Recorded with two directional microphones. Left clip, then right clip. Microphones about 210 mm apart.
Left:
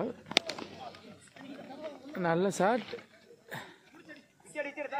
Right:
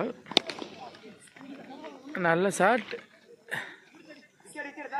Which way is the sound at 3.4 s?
Centre (ahead or behind).